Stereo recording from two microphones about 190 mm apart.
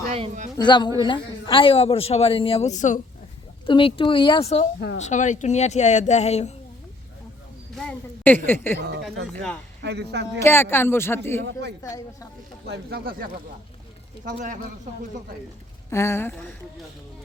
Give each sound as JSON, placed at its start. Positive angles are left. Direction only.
{"t": 0.1, "sound": "speech", "side_deg": -35}
{"t": 0.5, "sound": "a man's voice", "side_deg": 25}
{"t": 3.7, "sound": "a man's voice", "side_deg": 25}
{"t": 7.8, "sound": "speech", "side_deg": 5}
{"t": 9.8, "sound": "speech", "side_deg": -65}
{"t": 10.4, "sound": "speech", "side_deg": 10}
{"t": 12.6, "sound": "speech", "side_deg": -60}
{"t": 14.3, "sound": "speech", "side_deg": -45}
{"t": 15.9, "sound": "speech", "side_deg": 15}